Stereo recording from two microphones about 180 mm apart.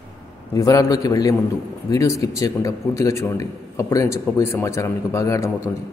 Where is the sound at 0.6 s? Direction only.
20° left (ahead or behind).